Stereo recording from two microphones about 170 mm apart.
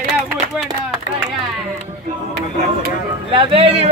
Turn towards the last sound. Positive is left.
turn(degrees=-35)  # may be behind; listen again after turning